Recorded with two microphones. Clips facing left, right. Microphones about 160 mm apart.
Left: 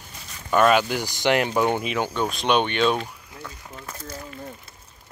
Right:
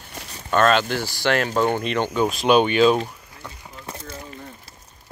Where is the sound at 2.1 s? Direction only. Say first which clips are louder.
Right 6 dB; 5° right (ahead or behind).